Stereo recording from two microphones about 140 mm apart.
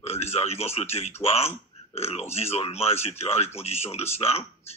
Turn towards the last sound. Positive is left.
turn(degrees=45)  # may be behind; listen again after turning